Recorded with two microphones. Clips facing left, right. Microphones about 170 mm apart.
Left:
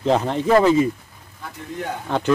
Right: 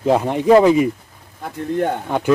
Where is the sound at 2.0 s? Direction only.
10° right (ahead or behind).